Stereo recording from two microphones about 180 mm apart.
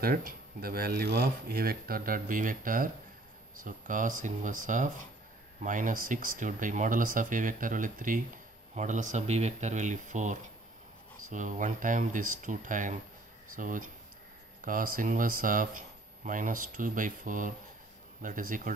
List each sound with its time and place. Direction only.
0.0 s speech: 55° right (ahead or behind)